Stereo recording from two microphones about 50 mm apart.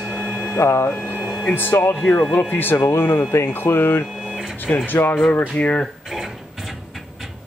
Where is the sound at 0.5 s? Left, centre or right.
Left.